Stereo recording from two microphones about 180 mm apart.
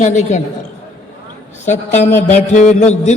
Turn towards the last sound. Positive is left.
turn(degrees=40)  # may be behind; listen again after turning